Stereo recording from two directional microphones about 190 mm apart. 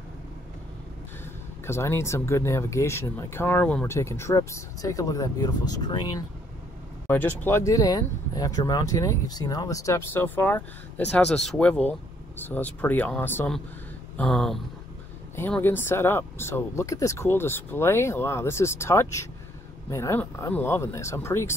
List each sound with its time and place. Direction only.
1.7 s speech: 15° left (ahead or behind)
7.1 s speech: 10° left (ahead or behind)